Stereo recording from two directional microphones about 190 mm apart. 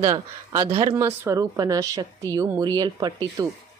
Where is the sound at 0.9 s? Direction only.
15° right (ahead or behind).